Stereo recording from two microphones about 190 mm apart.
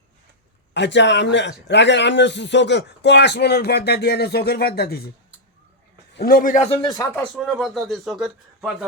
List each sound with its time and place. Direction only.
0.7 s a man's voice: 70° left (ahead or behind)
6.1 s a man's voice: 50° left (ahead or behind)
6.7 s speech: 20° left (ahead or behind)
7.2 s speech: centre (ahead or behind)